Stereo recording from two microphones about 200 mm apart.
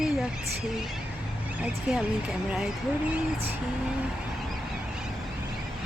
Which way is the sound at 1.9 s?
5° right (ahead or behind).